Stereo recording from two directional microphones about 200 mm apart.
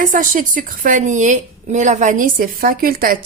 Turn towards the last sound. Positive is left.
turn(degrees=-45)  # may be behind; listen again after turning